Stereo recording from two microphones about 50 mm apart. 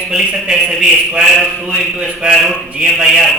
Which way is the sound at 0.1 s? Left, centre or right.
Centre.